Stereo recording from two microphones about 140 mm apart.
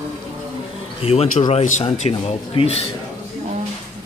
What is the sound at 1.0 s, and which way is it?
Speech, 50° left (ahead or behind).